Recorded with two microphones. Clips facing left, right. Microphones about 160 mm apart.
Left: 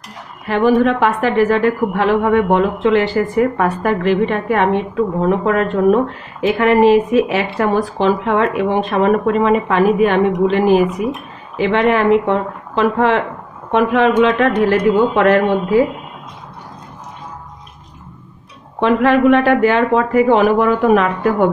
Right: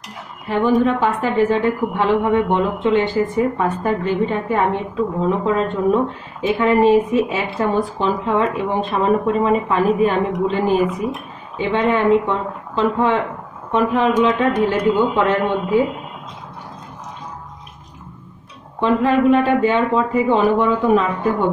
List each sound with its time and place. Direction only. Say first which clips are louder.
0.5 s a woman's voice: left 3 dB; 80° left
18.8 s a woman's voice: left 3 dB; 75° left (ahead or behind)